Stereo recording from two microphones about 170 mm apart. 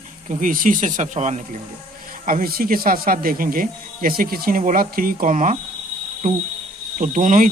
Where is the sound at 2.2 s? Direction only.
55° right (ahead or behind).